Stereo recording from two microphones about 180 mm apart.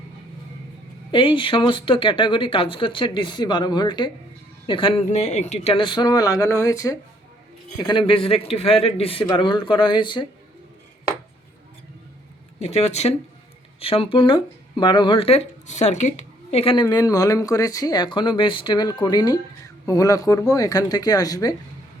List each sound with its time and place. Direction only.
1.1 s speech: 30° left (ahead or behind)
12.5 s speech: 35° left (ahead or behind)
16.8 s speech: 20° left (ahead or behind)